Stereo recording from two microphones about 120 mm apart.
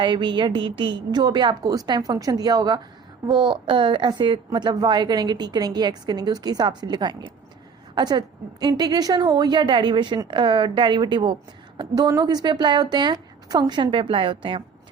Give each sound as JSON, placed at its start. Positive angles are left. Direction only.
{"t": 0.0, "sound": "a woman's voice", "side_deg": -40}
{"t": 3.5, "sound": "a woman's voice", "side_deg": -45}